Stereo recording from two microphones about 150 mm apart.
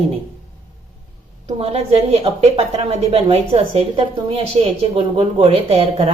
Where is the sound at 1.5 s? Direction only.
45° right (ahead or behind).